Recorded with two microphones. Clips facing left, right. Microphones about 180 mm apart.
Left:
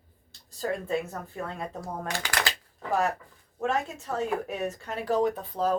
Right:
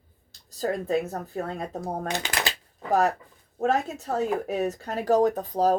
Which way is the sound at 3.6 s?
40° right (ahead or behind).